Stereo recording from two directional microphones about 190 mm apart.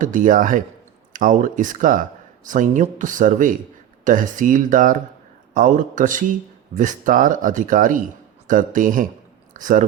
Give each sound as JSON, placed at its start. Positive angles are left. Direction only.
{"t": 0.0, "sound": "speech", "side_deg": -45}